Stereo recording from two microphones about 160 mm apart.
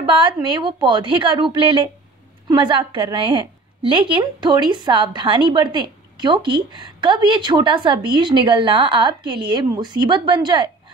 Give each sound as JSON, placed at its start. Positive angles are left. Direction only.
{"t": 0.0, "sound": "a woman's voice", "side_deg": -30}